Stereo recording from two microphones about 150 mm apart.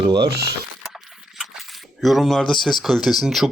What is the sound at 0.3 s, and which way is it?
Speech, 90° right.